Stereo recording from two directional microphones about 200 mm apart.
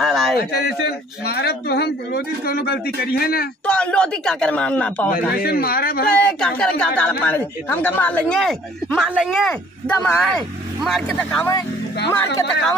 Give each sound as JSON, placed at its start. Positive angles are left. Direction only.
{"t": 0.0, "sound": "a sound", "side_deg": 0}
{"t": 0.4, "sound": "a man's voice", "side_deg": 50}
{"t": 3.6, "sound": "speech", "side_deg": 5}
{"t": 5.4, "sound": "a man's voice", "side_deg": 50}
{"t": 6.0, "sound": "speech", "side_deg": 5}